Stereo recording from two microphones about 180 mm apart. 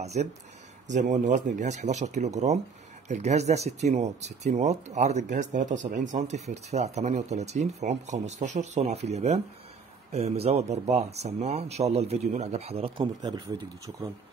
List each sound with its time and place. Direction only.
0.0 s speech: 40° right (ahead or behind); by 13.4 s 25° right (ahead or behind)